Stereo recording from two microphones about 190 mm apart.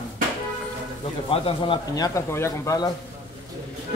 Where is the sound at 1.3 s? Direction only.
30° left (ahead or behind).